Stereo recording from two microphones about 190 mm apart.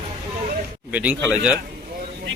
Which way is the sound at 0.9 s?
5° right (ahead or behind).